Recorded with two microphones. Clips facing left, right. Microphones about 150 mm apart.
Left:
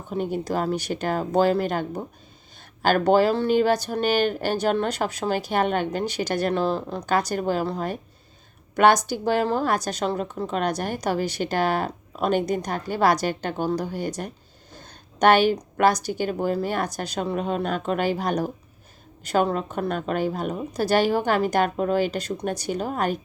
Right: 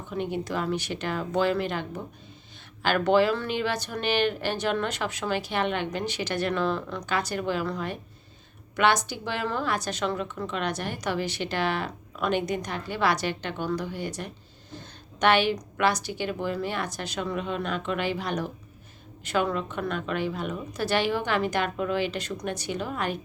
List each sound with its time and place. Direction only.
0.1 s a woman's voice: 40° left (ahead or behind)
14.7 s a sound: 45° left (ahead or behind)
15.8 s a woman's voice: 40° left (ahead or behind)